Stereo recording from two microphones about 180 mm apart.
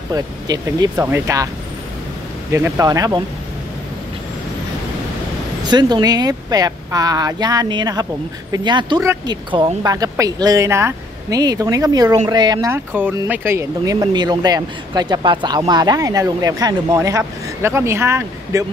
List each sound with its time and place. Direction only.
0.1 s speech: 20° right (ahead or behind)
2.5 s speech: 15° right (ahead or behind)
5.6 s speech: 25° right (ahead or behind)
12.7 s speech: 10° right (ahead or behind)